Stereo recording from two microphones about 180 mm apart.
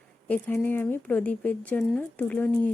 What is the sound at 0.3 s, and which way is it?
Speech, 10° left (ahead or behind).